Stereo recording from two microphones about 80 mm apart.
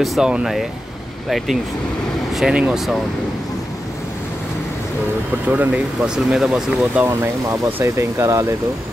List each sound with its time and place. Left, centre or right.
0.0 s speech: centre
2.3 s speech: centre
5.5 s speech: centre
7.1 s speech: right